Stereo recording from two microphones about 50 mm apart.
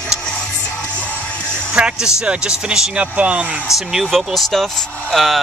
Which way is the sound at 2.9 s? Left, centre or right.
Right.